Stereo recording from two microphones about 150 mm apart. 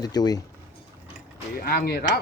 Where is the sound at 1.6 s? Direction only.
85° left.